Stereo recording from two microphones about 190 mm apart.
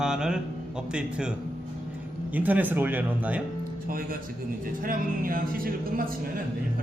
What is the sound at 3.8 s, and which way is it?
A man's voice, 50° right (ahead or behind).